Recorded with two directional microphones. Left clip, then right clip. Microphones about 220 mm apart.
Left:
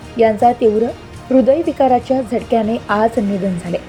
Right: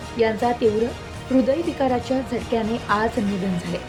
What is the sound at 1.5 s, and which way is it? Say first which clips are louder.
A woman's voice: left 9 dB; 15° left (ahead or behind).